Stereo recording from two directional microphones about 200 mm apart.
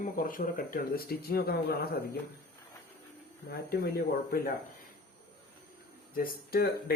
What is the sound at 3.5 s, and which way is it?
Speech, 50° left (ahead or behind).